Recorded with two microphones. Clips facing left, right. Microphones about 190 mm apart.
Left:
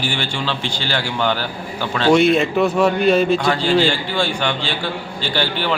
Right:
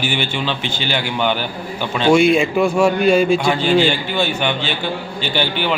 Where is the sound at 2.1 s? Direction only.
Centre (ahead or behind).